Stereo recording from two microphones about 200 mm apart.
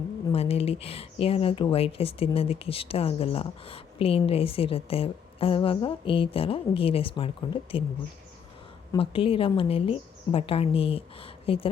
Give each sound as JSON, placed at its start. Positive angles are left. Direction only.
{"t": 0.3, "sound": "speech", "side_deg": 30}
{"t": 8.9, "sound": "speech", "side_deg": 25}